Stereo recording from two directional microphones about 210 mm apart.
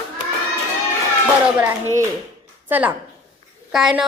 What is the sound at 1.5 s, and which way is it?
A child's voice, 10° right (ahead or behind).